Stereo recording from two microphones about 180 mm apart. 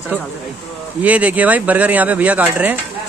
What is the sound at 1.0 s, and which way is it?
Speech, 10° right (ahead or behind).